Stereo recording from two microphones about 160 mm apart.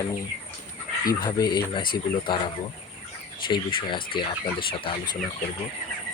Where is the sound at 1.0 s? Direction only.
25° left (ahead or behind).